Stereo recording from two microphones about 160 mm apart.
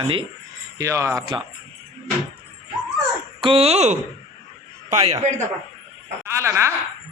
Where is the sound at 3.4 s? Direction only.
40° right (ahead or behind).